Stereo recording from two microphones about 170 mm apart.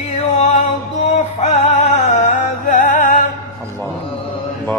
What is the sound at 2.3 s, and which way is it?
Music, 50° left (ahead or behind).